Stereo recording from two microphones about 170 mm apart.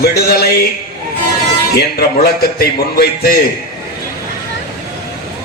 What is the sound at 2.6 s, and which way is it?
Speech, 65° left (ahead or behind).